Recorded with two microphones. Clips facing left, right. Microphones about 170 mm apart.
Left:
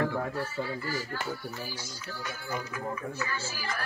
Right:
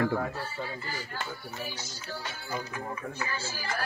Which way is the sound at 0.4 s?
20° right (ahead or behind).